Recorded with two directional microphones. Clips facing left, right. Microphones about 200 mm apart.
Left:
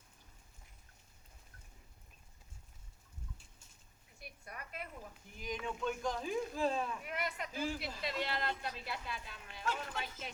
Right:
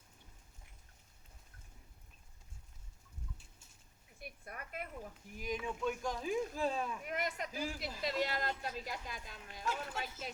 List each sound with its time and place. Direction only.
4.2 s a sound: 50° right (ahead or behind)
5.4 s speech: 5° right (ahead or behind)
7.0 s speech: 45° right (ahead or behind)